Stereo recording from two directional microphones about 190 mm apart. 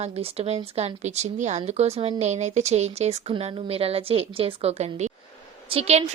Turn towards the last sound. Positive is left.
turn(degrees=-30)  # may be behind; listen again after turning